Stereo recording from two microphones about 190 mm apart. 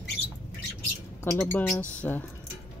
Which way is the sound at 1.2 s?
10° left (ahead or behind).